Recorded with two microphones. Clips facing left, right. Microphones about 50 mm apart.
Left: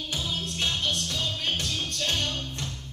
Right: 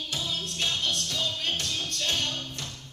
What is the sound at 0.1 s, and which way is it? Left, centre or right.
Music, centre.